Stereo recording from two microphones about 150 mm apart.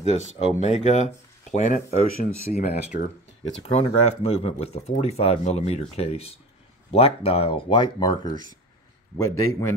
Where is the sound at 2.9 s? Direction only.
70° left (ahead or behind).